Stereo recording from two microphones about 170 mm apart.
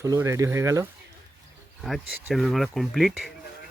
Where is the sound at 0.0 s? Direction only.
15° right (ahead or behind).